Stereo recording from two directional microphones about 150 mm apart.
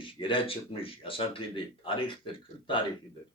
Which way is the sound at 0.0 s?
35° left (ahead or behind).